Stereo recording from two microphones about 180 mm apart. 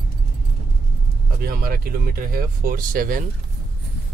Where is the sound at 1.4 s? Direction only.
55° right (ahead or behind).